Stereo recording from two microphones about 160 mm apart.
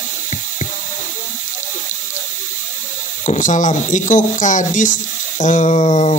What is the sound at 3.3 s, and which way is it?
Speech, 50° left (ahead or behind).